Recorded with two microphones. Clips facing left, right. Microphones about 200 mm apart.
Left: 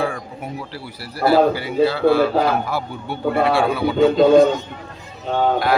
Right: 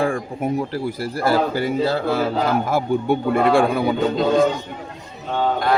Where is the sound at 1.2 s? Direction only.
45° right (ahead or behind).